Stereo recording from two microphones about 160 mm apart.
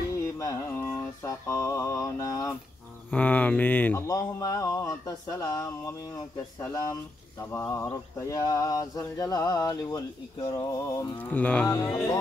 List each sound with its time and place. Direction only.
0.2 s music: 20° left (ahead or behind)
0.8 s mantra: 15° left (ahead or behind)
3.1 s a sound: 10° left (ahead or behind)